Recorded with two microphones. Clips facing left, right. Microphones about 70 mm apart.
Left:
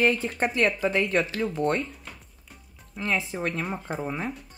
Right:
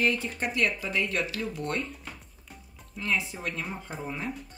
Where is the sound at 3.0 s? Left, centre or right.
Left.